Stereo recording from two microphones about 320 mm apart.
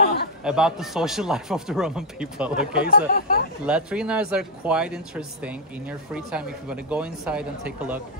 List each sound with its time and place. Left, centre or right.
0.4 s speech: centre
2.9 s speech: left
3.6 s speech: centre